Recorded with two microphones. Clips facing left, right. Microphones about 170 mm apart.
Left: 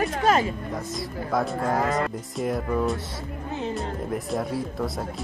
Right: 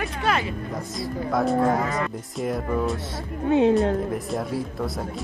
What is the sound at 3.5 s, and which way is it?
Speech, 65° right (ahead or behind).